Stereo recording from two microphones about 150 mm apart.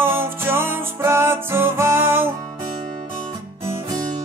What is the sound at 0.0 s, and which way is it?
Music, 15° right (ahead or behind).